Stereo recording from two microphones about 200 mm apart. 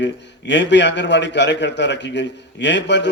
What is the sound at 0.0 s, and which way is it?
A man's voice, 60° left (ahead or behind).